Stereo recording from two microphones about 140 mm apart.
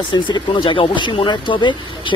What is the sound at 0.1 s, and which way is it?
Speech, 35° left (ahead or behind).